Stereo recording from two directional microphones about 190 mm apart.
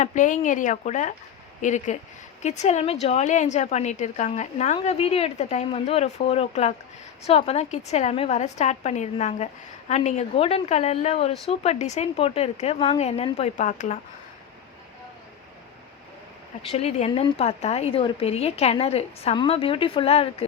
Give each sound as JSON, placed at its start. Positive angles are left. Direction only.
{"t": 0.0, "sound": "a woman's voice", "side_deg": 40}
{"t": 16.6, "sound": "a woman's voice", "side_deg": 35}